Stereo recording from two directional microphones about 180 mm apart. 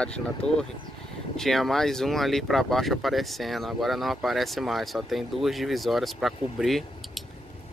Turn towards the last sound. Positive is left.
turn(degrees=0)  # may be behind; listen again after turning